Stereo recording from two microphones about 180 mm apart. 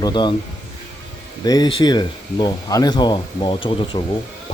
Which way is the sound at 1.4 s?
20° left (ahead or behind).